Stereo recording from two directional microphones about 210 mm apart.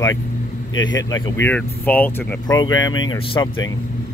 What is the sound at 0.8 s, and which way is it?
Speech, 20° left (ahead or behind).